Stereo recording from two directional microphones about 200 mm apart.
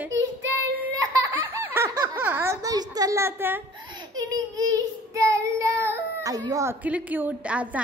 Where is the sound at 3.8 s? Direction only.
20° right (ahead or behind).